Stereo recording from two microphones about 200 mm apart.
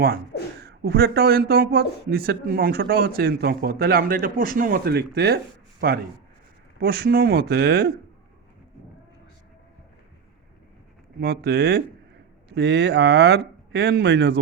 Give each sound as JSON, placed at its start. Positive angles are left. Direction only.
{"t": 0.6, "sound": "a man's voice", "side_deg": -55}
{"t": 11.2, "sound": "a man's voice", "side_deg": -50}